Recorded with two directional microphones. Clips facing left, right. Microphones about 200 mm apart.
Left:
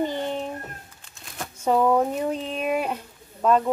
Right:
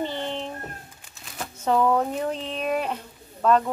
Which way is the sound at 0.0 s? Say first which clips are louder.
Left 3 dB; 10° left (ahead or behind).